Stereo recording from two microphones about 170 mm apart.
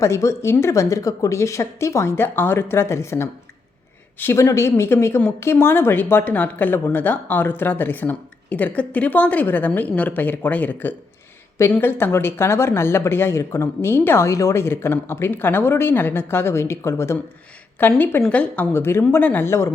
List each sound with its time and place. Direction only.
0.0 s speech: 15° left (ahead or behind)